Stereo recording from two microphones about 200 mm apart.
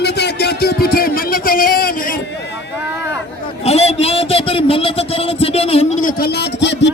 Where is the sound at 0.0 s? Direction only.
55° left (ahead or behind).